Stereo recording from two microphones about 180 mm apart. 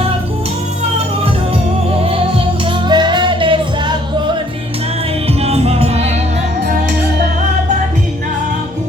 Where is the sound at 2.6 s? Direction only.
25° right (ahead or behind).